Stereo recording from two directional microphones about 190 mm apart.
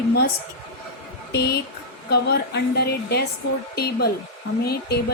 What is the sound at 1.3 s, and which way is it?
A woman's voice, 60° left (ahead or behind).